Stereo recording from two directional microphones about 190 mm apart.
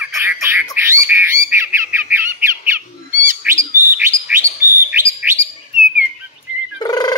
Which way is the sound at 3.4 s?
10° right (ahead or behind).